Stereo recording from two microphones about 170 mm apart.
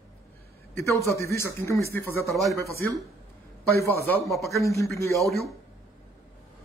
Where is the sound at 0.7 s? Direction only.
15° left (ahead or behind).